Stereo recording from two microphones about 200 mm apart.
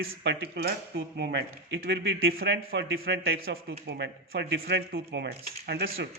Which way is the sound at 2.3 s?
55° right (ahead or behind).